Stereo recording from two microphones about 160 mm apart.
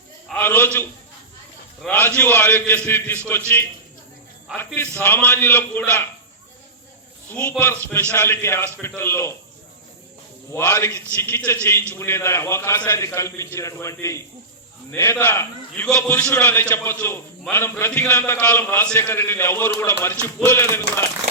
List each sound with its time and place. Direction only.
0.3 s a man's voice: 10° left (ahead or behind)
1.9 s a man's voice: 15° left (ahead or behind)
7.6 s a man's voice: 15° left (ahead or behind)
10.5 s a man's voice: 15° left (ahead or behind)